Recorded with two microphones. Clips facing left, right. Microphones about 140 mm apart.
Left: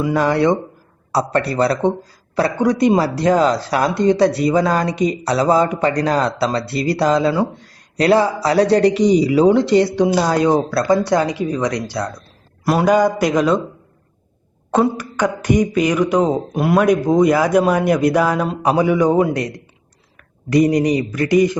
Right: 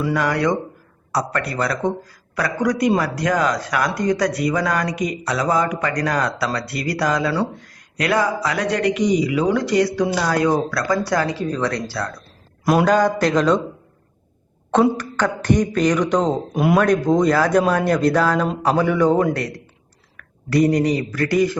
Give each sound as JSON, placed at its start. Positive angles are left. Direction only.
{"t": 0.0, "sound": "a man's voice", "side_deg": 25}
{"t": 12.6, "sound": "speech", "side_deg": 5}
{"t": 14.7, "sound": "speech", "side_deg": 5}